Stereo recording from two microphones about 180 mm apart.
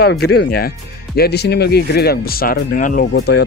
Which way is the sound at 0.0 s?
60° left (ahead or behind).